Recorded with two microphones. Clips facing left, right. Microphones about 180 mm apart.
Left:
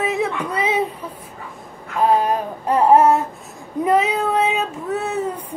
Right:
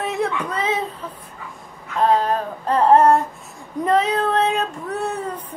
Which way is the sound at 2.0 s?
10° left (ahead or behind).